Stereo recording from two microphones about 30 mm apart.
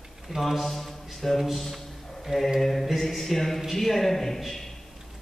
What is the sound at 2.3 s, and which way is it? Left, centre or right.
Mantra, centre.